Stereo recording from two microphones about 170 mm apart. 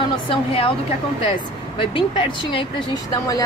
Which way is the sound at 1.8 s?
30° left (ahead or behind).